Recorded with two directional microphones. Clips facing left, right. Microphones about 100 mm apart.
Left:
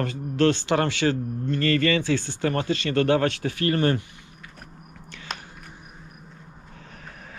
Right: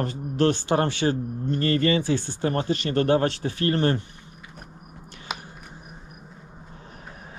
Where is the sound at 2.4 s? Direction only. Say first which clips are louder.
Even; 30° right (ahead or behind).